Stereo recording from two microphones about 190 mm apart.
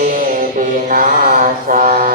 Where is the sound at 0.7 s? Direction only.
45° right (ahead or behind).